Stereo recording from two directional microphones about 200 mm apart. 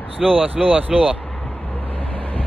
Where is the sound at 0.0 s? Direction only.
5° left (ahead or behind).